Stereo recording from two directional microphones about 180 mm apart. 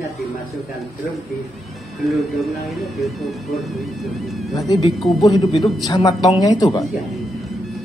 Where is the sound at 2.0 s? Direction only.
Centre (ahead or behind).